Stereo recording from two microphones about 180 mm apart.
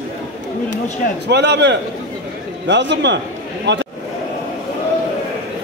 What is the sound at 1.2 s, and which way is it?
A man's voice, 70° right (ahead or behind).